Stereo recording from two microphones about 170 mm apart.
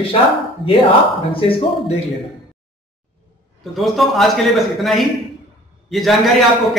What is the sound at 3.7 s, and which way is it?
A man's voice, centre (ahead or behind).